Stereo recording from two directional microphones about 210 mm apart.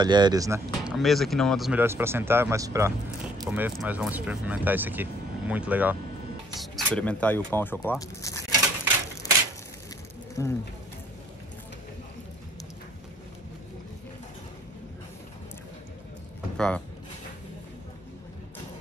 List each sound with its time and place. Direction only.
0.0 s speech: 20° right (ahead or behind)
0.8 s speech: centre (ahead or behind)
9.2 s crushing: 15° left (ahead or behind)
10.4 s speech: 15° left (ahead or behind)
16.5 s speech: 5° left (ahead or behind)